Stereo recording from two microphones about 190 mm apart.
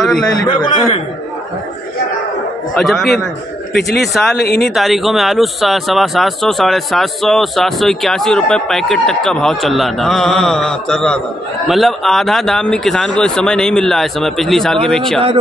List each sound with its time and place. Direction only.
0.0 s speech: centre (ahead or behind)
0.5 s a man's voice: 25° left (ahead or behind)
2.8 s speech: centre (ahead or behind)
3.7 s a man's voice: 60° left (ahead or behind)
4.6 s speech: centre (ahead or behind)